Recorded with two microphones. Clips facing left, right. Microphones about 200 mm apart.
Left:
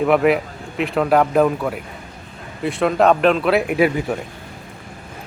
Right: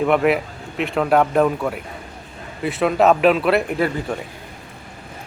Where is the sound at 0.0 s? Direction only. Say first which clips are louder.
Left 2 dB; centre (ahead or behind).